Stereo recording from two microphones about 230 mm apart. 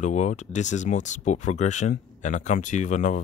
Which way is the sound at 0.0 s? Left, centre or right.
Left.